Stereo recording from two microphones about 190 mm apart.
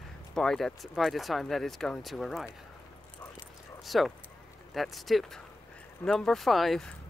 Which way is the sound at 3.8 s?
Centre (ahead or behind).